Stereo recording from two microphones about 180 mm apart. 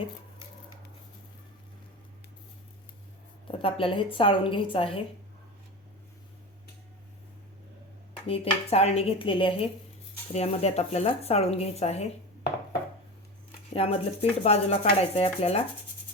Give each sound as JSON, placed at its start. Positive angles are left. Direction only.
{"t": 3.4, "sound": "a woman's voice", "side_deg": 30}
{"t": 8.3, "sound": "speech", "side_deg": 35}
{"t": 13.7, "sound": "speech", "side_deg": 35}